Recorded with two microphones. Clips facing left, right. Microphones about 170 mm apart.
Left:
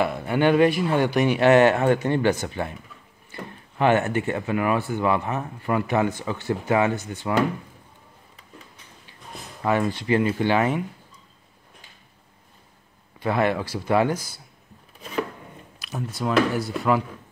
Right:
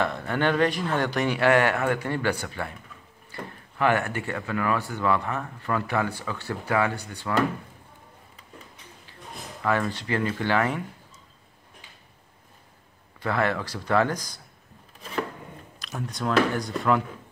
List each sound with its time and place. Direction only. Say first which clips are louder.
0.0 s speech: left 4 dB; 10° left (ahead or behind)
9.6 s speech: left 3 dB; 20° left (ahead or behind)
13.2 s speech: left 3 dB; 15° left (ahead or behind)
15.8 s speech: left 2 dB; 5° left (ahead or behind)